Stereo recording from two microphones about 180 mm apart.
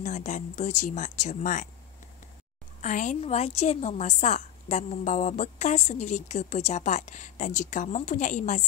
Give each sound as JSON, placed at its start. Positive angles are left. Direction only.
{"t": 0.0, "sound": "speech", "side_deg": 40}
{"t": 2.8, "sound": "a woman's voice", "side_deg": 45}